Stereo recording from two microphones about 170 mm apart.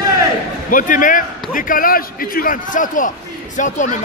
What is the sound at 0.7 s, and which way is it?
A man's voice, 50° left (ahead or behind).